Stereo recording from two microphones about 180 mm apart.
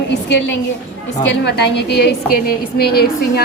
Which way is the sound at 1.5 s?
70° left (ahead or behind).